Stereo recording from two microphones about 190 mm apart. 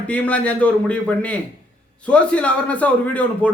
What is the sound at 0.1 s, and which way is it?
Speech, 5° left (ahead or behind).